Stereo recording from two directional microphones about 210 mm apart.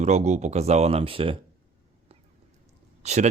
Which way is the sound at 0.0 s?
35° right (ahead or behind).